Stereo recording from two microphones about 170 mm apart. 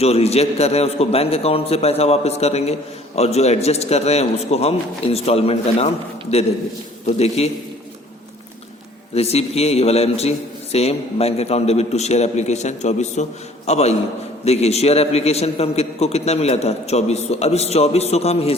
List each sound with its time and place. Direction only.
0.0 s a man's voice: 35° left (ahead or behind)
7.2 s a man's voice: 40° left (ahead or behind)
9.1 s a man's voice: 35° left (ahead or behind)